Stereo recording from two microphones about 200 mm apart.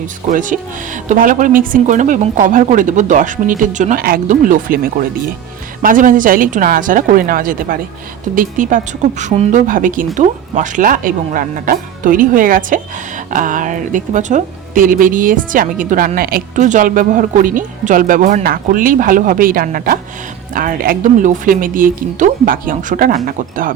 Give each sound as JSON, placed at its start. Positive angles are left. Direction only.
{"t": 0.3, "sound": "a woman's voice", "side_deg": -40}